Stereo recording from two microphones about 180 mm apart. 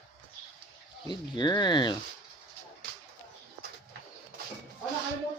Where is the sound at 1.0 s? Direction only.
25° left (ahead or behind).